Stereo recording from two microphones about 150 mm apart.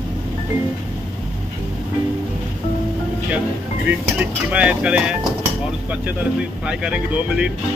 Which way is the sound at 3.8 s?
10° right (ahead or behind).